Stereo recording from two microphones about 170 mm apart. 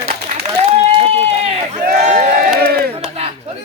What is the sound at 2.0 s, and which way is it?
Speech, 45° right (ahead or behind).